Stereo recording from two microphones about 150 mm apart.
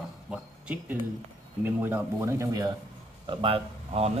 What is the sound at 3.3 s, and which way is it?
Speech, 35° right (ahead or behind).